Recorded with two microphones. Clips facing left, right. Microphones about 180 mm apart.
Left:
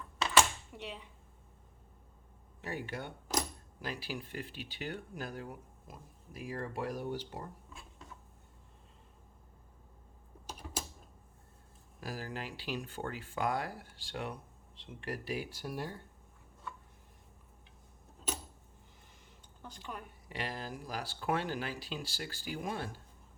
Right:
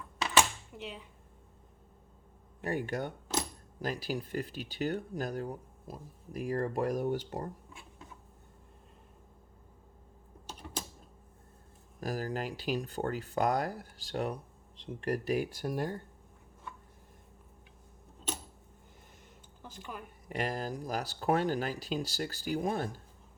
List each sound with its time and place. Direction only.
0.8 s speech: centre (ahead or behind)
2.6 s speech: 50° right (ahead or behind)
10.4 s typing: 10° left (ahead or behind)
11.9 s speech: 45° right (ahead or behind)
19.6 s a sound: 5° right (ahead or behind)
20.2 s speech: 45° right (ahead or behind)